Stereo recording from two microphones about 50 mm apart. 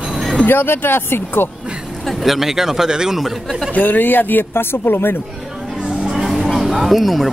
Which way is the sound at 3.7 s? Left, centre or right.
Left.